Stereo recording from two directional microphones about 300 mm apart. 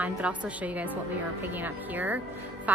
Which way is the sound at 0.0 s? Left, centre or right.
Centre.